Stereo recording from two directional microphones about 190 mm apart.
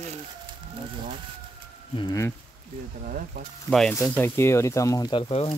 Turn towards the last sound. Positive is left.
turn(degrees=30)  # may be behind; listen again after turning